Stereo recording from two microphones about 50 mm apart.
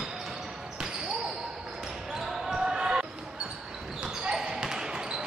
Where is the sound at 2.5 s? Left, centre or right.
Centre.